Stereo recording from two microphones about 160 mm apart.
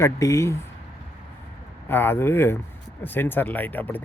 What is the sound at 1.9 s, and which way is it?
Speech, 15° left (ahead or behind).